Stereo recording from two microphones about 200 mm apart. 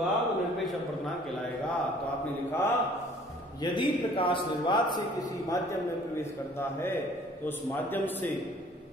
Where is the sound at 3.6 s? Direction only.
25° left (ahead or behind).